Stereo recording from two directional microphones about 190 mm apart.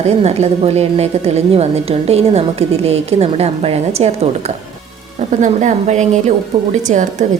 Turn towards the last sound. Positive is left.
turn(degrees=-40)  # may be behind; listen again after turning